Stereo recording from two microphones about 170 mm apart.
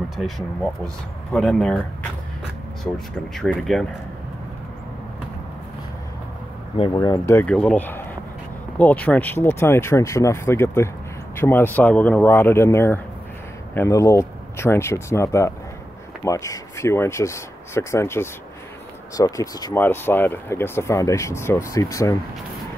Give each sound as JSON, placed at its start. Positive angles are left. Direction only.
{"t": 0.2, "sound": "speech", "side_deg": 0}
{"t": 3.3, "sound": "speech", "side_deg": 5}
{"t": 6.8, "sound": "speech", "side_deg": 25}